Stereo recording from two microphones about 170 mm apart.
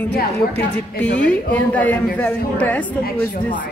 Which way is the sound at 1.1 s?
10° left (ahead or behind).